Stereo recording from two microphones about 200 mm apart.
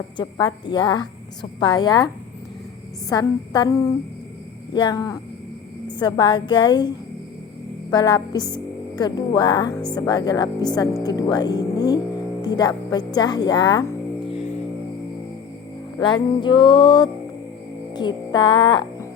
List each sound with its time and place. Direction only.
0.2 s a woman's voice: 25° left (ahead or behind)
3.1 s a woman's voice: 20° left (ahead or behind)
16.0 s a woman's voice: 25° left (ahead or behind)